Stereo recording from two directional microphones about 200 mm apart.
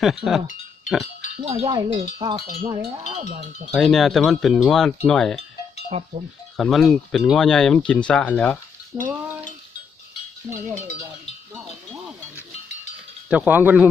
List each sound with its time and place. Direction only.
0.0 s speech: centre (ahead or behind)
1.4 s speech: 30° right (ahead or behind)
3.7 s speech: centre (ahead or behind)
5.9 s cowbell: 30° right (ahead or behind)
6.6 s speech: centre (ahead or behind)
8.9 s speech: 15° right (ahead or behind)
10.4 s speech: 5° left (ahead or behind)
13.3 s speech: 10° right (ahead or behind)